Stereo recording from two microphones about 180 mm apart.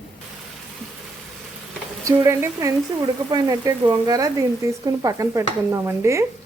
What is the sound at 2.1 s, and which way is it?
A woman's voice, 15° right (ahead or behind).